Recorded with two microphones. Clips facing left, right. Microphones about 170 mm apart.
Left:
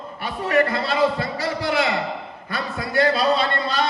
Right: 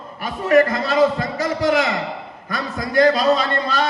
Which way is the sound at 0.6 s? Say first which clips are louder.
Right 3 dB; 35° left (ahead or behind).